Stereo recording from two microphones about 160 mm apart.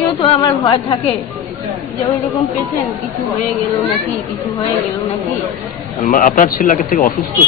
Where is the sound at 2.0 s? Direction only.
20° left (ahead or behind).